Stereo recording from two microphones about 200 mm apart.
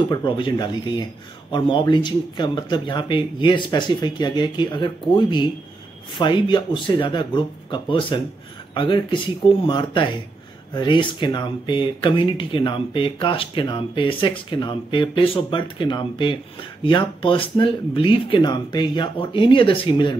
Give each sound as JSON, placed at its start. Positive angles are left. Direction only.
{"t": 0.1, "sound": "speech", "side_deg": 20}